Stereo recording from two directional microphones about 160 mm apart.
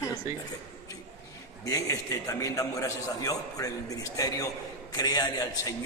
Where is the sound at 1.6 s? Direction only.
20° left (ahead or behind).